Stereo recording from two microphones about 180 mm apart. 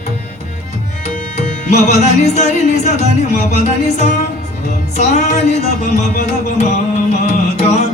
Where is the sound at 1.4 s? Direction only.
40° left (ahead or behind).